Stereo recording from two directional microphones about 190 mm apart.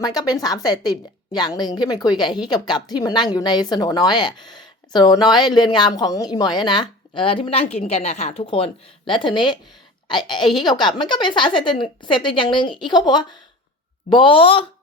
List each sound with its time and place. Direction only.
0.0 s a woman's voice: 20° left (ahead or behind)